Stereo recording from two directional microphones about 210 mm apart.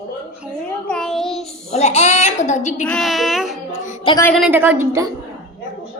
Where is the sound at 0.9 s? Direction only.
5° left (ahead or behind).